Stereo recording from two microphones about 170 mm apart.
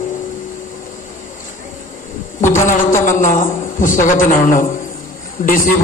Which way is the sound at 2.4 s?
45° left (ahead or behind).